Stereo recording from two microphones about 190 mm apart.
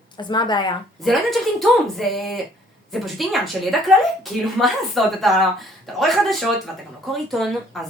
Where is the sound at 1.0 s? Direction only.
Centre (ahead or behind).